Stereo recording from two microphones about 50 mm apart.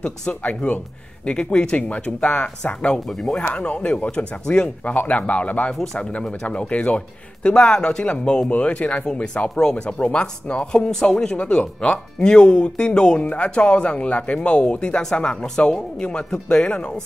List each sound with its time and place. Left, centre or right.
0.3 s speech: left
3.1 s speech: centre
3.3 s speech: left
4.8 s speech: left